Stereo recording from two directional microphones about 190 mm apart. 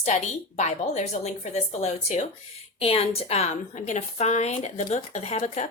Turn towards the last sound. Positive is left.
turn(degrees=35)  # may be behind; listen again after turning